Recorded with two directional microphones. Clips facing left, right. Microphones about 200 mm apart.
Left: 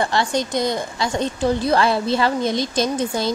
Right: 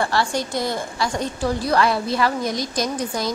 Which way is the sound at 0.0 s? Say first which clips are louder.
Left 2 dB; 20° left (ahead or behind).